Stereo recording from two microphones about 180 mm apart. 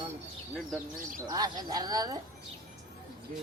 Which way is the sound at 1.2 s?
20° right (ahead or behind).